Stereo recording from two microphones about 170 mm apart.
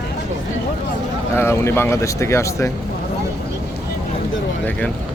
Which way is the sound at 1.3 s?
15° left (ahead or behind).